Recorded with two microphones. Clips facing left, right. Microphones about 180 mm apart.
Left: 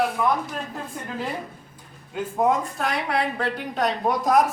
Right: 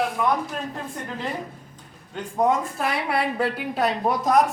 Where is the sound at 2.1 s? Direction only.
Centre (ahead or behind).